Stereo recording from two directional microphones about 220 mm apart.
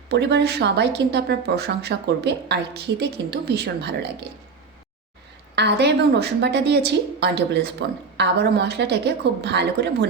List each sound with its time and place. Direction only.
0.1 s a woman's voice: 50° right (ahead or behind)
5.5 s a woman's voice: 50° right (ahead or behind)